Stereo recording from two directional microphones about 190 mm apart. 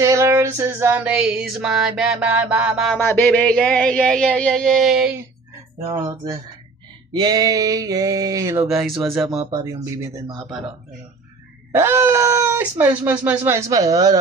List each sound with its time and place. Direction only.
0.0 s music: 15° right (ahead or behind)
3.0 s music: 10° left (ahead or behind)
7.1 s a sound: 20° right (ahead or behind)
8.6 s music: centre (ahead or behind)
9.4 s a sound: 20° right (ahead or behind)
11.7 s speech: 10° right (ahead or behind)